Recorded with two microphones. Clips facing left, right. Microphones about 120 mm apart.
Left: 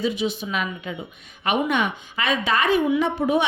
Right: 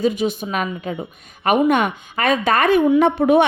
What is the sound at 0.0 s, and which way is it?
A woman's voice, 45° right (ahead or behind).